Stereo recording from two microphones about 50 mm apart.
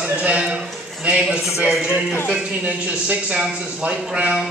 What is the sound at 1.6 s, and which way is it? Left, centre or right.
Speech, centre.